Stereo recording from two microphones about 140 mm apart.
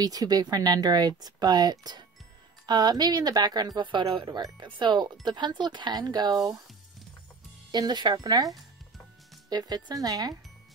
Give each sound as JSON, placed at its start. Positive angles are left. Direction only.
{"t": 0.0, "sound": "speech", "side_deg": -25}
{"t": 7.7, "sound": "speech", "side_deg": -30}